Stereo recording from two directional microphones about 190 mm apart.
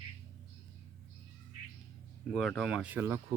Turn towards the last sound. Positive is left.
turn(degrees=-10)  # may be behind; listen again after turning